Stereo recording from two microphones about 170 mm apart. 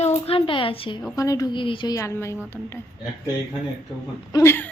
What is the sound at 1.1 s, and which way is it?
A woman's voice, 20° left (ahead or behind).